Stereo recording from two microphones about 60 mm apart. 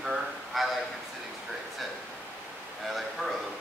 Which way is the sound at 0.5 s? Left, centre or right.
Centre.